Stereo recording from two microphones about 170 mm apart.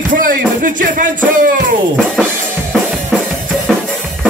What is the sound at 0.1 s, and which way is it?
Music, 50° right (ahead or behind).